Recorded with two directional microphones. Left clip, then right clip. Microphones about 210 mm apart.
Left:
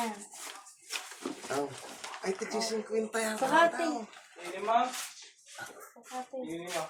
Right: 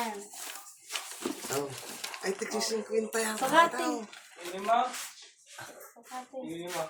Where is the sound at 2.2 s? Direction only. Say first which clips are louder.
Right 1 dB; 10° left (ahead or behind).